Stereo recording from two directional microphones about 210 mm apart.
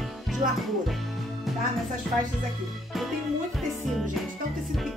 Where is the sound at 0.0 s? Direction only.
Centre (ahead or behind).